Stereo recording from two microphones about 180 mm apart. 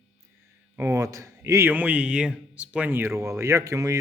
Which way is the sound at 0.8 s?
15° right (ahead or behind).